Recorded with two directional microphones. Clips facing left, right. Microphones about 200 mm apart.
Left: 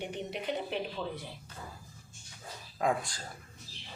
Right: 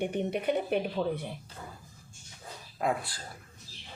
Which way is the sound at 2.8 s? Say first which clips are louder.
Even; 5° right (ahead or behind).